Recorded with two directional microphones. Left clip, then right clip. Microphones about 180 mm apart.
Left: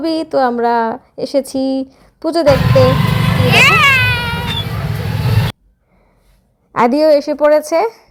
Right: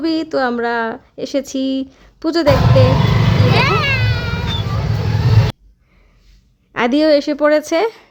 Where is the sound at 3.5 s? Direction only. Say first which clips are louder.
Left 8 dB; 10° right (ahead or behind).